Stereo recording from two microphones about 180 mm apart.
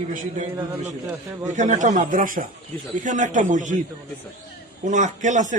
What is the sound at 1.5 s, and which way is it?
A man's voice, 45° right (ahead or behind).